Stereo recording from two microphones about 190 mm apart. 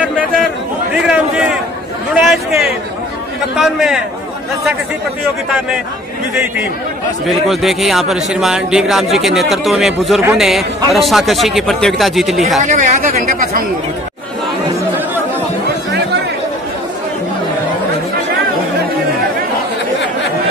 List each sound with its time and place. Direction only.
1.0 s a sound: 5° right (ahead or behind)
3.5 s a man's voice: centre (ahead or behind)
7.2 s speech: centre (ahead or behind)
12.6 s speech: 40° right (ahead or behind)